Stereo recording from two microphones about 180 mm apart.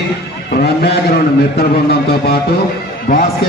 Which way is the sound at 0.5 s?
65° left (ahead or behind).